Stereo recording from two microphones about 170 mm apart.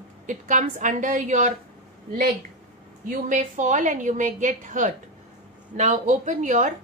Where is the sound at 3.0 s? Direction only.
50° right (ahead or behind).